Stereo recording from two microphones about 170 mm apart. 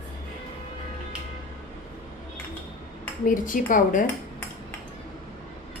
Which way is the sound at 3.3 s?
50° left (ahead or behind).